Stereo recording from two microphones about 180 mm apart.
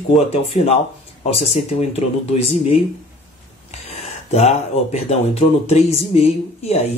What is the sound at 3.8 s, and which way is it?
Speech, 35° left (ahead or behind).